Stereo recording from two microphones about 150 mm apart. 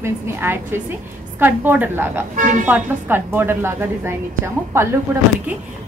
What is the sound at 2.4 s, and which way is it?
Speech, 60° right (ahead or behind).